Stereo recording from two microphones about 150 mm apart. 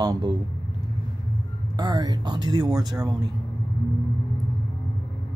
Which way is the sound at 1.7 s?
25° right (ahead or behind).